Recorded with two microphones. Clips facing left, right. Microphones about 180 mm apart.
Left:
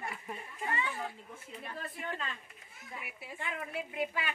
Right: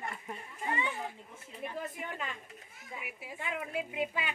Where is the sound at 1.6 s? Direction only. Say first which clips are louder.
Right 4 dB; 15° right (ahead or behind).